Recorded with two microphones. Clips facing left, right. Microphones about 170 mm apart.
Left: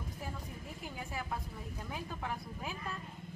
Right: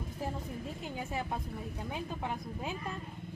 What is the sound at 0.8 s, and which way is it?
A woman's voice, 25° right (ahead or behind).